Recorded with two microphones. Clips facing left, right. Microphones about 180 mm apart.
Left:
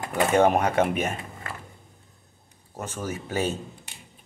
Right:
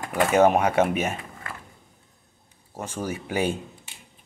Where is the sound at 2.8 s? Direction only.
10° right (ahead or behind).